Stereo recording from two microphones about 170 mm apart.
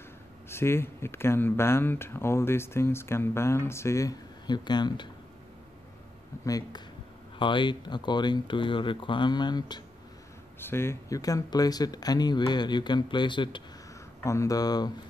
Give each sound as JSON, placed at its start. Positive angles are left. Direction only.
{"t": 0.5, "sound": "speech", "side_deg": 15}
{"t": 6.4, "sound": "speech", "side_deg": 20}
{"t": 10.6, "sound": "speech", "side_deg": 15}
{"t": 14.2, "sound": "speech", "side_deg": 15}